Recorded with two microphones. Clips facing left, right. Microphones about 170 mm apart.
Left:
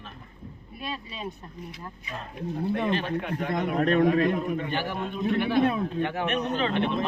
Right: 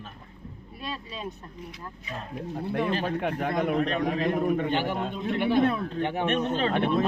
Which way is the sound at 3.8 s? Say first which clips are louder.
Left 5 dB; 45° left (ahead or behind).